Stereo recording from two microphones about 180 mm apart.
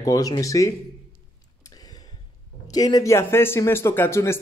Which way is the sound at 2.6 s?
20° left (ahead or behind).